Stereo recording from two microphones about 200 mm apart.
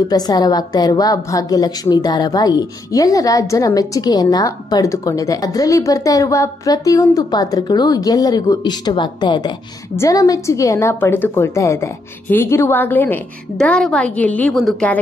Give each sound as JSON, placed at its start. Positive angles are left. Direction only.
{"t": 0.1, "sound": "a woman's voice", "side_deg": 20}